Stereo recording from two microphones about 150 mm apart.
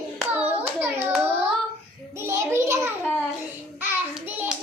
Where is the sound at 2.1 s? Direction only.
20° right (ahead or behind).